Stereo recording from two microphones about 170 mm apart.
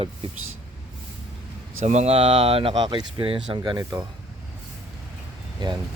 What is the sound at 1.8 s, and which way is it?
Speech, 40° right (ahead or behind).